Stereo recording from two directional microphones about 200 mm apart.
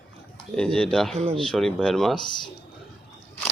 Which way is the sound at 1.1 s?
30° right (ahead or behind).